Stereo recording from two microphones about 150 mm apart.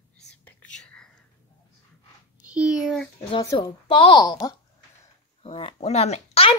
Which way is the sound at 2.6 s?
5° right (ahead or behind).